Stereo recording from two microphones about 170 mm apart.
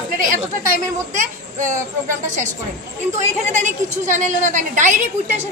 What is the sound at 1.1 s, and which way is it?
A woman's voice, 45° right (ahead or behind).